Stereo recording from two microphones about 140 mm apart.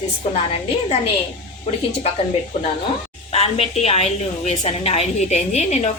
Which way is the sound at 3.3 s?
45° left (ahead or behind).